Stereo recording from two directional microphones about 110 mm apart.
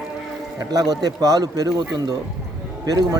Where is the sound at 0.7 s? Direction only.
35° right (ahead or behind).